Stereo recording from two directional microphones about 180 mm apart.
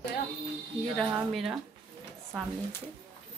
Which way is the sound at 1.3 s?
Centre (ahead or behind).